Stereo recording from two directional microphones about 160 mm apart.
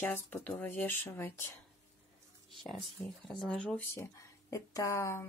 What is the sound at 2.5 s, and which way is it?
Speech, centre (ahead or behind).